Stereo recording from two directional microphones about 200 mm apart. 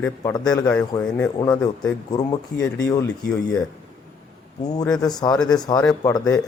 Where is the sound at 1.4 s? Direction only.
20° left (ahead or behind).